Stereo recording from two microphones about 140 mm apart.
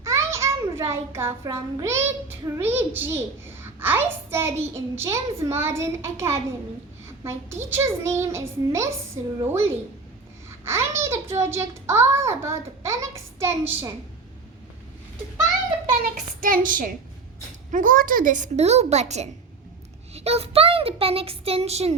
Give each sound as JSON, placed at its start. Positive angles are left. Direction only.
{"t": 0.0, "sound": "a sound", "side_deg": -20}
{"t": 2.6, "sound": "a child's voice", "side_deg": -15}
{"t": 16.4, "sound": "a child's voice", "side_deg": -85}